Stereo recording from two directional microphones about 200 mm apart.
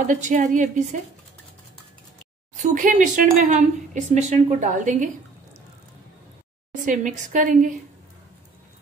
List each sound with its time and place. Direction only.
0.0 s speech: 40° right (ahead or behind)
2.5 s speech: 40° right (ahead or behind)
6.9 s speech: 40° right (ahead or behind)